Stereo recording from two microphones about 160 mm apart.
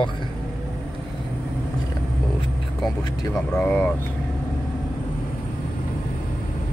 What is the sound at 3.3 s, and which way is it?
Speech, 5° left (ahead or behind).